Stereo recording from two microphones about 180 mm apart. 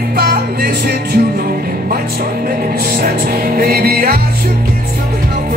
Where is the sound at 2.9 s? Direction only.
55° right (ahead or behind).